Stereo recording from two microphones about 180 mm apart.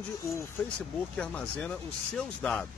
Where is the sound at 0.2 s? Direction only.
15° left (ahead or behind).